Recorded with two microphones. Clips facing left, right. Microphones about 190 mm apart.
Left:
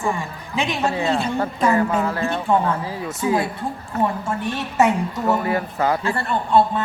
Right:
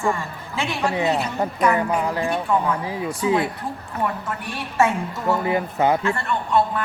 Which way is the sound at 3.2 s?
25° left (ahead or behind).